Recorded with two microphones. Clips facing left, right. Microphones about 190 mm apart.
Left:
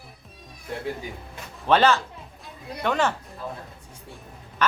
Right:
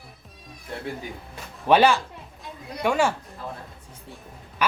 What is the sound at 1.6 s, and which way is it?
Speech, 15° right (ahead or behind).